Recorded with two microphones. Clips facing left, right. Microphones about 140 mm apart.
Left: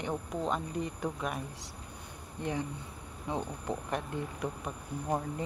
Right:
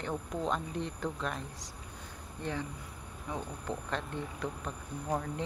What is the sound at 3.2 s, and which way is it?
Speech, 30° left (ahead or behind).